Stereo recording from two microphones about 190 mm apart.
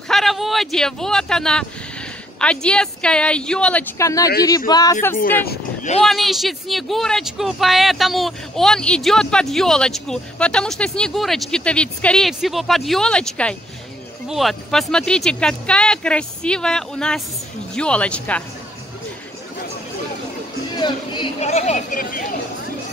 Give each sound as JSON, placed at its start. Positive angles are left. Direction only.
{"t": 0.1, "sound": "speech", "side_deg": 0}
{"t": 4.0, "sound": "a man's voice", "side_deg": 15}
{"t": 6.0, "sound": "speech", "side_deg": 0}
{"t": 20.7, "sound": "speech", "side_deg": 25}